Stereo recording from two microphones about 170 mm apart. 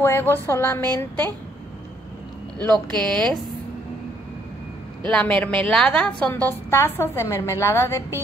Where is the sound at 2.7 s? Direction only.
25° right (ahead or behind).